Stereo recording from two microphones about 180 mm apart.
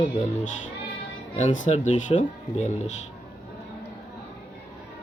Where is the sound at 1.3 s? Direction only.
40° left (ahead or behind).